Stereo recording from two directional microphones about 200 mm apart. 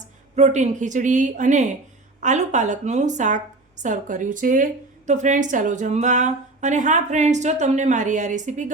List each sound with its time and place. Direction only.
0.3 s a woman's voice: 35° right (ahead or behind)